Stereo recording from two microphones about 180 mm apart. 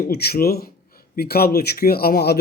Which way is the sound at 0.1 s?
60° left (ahead or behind).